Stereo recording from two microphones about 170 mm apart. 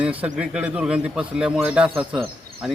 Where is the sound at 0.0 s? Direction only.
10° right (ahead or behind).